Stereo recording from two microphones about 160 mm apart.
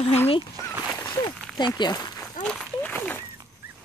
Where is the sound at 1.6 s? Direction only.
25° left (ahead or behind).